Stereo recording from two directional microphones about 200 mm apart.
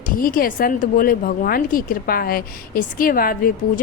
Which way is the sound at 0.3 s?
45° left (ahead or behind).